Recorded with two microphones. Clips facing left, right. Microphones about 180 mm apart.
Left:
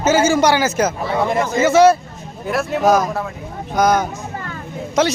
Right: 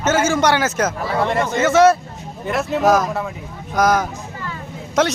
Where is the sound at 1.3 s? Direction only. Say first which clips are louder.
Left 2 dB; 5° left (ahead or behind).